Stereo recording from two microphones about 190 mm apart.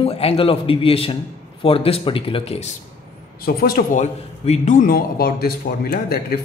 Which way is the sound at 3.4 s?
50° left (ahead or behind).